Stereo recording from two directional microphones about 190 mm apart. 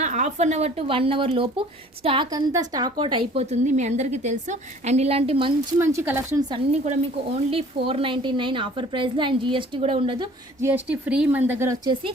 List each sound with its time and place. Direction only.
0.0 s a woman's voice: 40° right (ahead or behind)
5.8 s speech: 10° right (ahead or behind)
6.5 s a woman's voice: 35° right (ahead or behind)
10.6 s speech: 10° right (ahead or behind)